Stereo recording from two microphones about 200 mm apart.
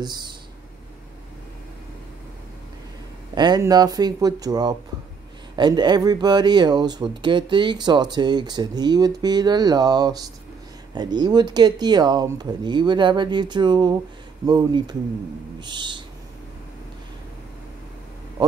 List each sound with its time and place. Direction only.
3.3 s speech: 20° right (ahead or behind)